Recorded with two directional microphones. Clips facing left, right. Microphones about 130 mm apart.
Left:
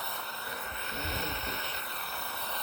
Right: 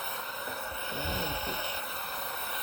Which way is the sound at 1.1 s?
15° right (ahead or behind).